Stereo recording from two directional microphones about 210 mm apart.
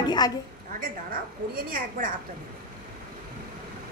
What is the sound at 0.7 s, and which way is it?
A woman's voice, 40° right (ahead or behind).